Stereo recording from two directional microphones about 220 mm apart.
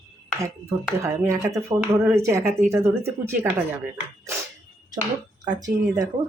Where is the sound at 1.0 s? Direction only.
10° right (ahead or behind).